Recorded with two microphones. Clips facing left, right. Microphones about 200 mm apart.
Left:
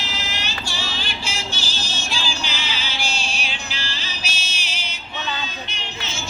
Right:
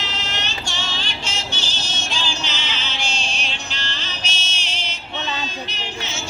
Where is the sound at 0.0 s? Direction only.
5° left (ahead or behind).